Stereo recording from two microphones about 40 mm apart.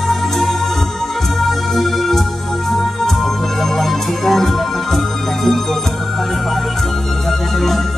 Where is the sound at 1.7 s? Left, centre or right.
Centre.